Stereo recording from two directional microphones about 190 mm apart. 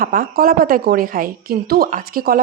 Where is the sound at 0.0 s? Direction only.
50° right (ahead or behind).